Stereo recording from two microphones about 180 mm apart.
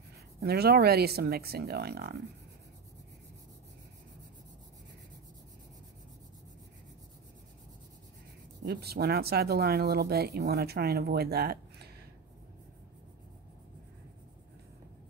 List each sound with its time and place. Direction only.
0.4 s speech: 65° right (ahead or behind)
8.6 s speech: 60° right (ahead or behind)